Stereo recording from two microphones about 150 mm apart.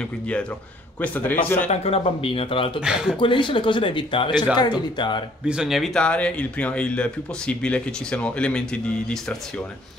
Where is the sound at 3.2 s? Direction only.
35° left (ahead or behind).